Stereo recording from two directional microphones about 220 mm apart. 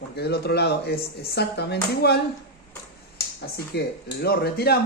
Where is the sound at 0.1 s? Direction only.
45° left (ahead or behind).